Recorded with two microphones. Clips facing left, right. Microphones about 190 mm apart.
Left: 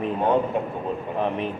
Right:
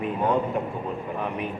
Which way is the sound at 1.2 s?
30° left (ahead or behind).